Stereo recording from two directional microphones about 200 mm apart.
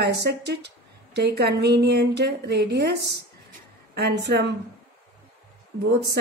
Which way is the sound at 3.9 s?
55° right (ahead or behind).